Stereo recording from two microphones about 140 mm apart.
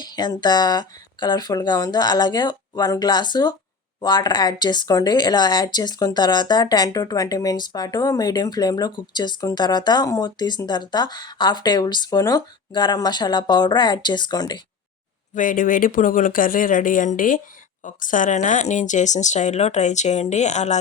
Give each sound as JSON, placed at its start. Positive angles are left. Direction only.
{"t": 0.1, "sound": "speech", "side_deg": 30}
{"t": 15.4, "sound": "speech", "side_deg": 75}